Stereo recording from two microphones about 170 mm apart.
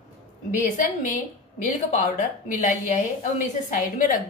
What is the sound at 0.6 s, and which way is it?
Speech, 50° left (ahead or behind).